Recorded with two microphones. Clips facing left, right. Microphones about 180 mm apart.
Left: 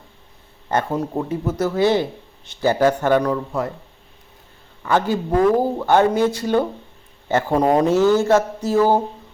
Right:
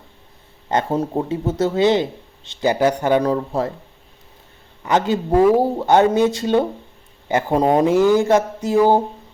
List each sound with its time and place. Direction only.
0.7 s speech: 20° right (ahead or behind)
3.2 s speech: 30° right (ahead or behind)
4.8 s speech: 20° right (ahead or behind)